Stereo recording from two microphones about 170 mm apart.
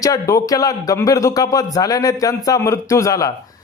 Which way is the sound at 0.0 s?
20° left (ahead or behind).